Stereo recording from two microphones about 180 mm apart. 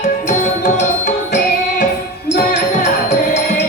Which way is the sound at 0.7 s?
45° left (ahead or behind).